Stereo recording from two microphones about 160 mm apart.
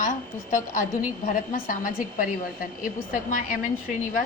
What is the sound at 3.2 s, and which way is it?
Speech, 55° left (ahead or behind).